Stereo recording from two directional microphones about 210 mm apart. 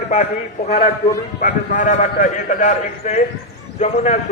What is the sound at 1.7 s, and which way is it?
A man's voice, 35° left (ahead or behind).